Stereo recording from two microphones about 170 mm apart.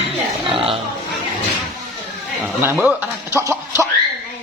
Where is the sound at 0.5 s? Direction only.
35° right (ahead or behind).